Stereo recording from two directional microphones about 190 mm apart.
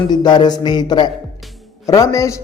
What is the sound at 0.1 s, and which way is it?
Speech, 25° left (ahead or behind).